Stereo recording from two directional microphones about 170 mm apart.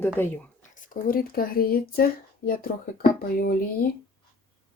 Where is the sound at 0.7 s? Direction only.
50° left (ahead or behind).